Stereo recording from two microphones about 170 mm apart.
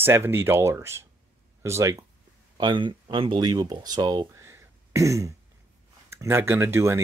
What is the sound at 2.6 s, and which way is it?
Speech, 30° right (ahead or behind).